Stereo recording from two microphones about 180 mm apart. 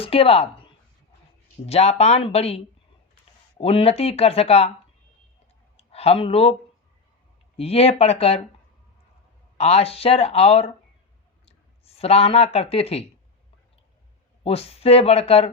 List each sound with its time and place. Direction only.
0.0 s speech: 30° left (ahead or behind)
1.6 s speech: 35° left (ahead or behind)
3.6 s speech: 30° left (ahead or behind)
5.7 s a sound: 35° left (ahead or behind)
7.5 s speech: 35° left (ahead or behind)
9.6 s speech: 35° left (ahead or behind)
14.4 s speech: 35° left (ahead or behind)